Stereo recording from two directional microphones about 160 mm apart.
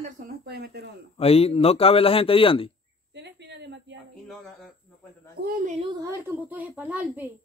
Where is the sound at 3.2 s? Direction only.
90° right.